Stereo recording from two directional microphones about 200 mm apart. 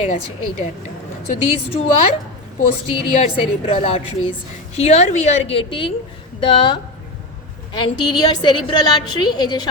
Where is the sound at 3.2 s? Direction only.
30° left (ahead or behind).